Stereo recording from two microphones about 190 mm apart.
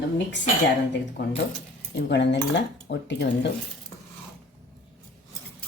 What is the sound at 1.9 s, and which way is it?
Speech, 65° left (ahead or behind).